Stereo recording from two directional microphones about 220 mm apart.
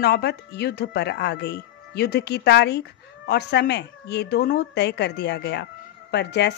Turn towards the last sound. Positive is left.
turn(degrees=50)  # may be behind; listen again after turning